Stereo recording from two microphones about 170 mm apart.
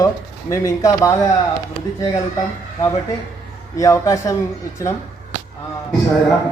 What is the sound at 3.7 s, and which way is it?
Speech, 20° left (ahead or behind).